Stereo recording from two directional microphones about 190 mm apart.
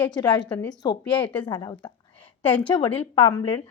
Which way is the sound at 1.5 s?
25° left (ahead or behind).